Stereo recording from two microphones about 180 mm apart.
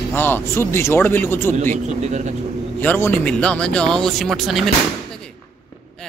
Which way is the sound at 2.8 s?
10° left (ahead or behind).